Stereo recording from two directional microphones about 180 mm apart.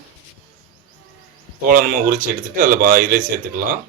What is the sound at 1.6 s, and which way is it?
Speech, 50° right (ahead or behind).